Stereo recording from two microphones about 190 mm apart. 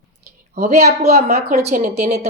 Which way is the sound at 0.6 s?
40° right (ahead or behind).